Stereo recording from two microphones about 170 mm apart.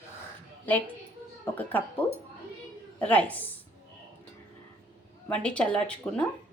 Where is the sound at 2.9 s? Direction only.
10° left (ahead or behind).